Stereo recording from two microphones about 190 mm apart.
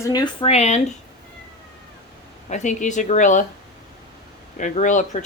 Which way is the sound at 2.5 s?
40° left (ahead or behind).